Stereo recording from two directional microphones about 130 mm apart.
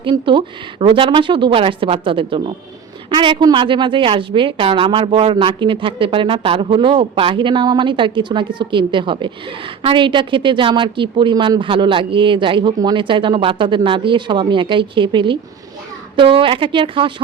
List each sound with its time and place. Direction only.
0.0 s a woman's voice: 40° right (ahead or behind)